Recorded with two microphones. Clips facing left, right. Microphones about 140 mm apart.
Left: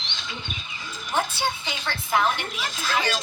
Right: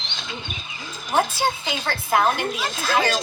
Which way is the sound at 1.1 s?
40° right (ahead or behind).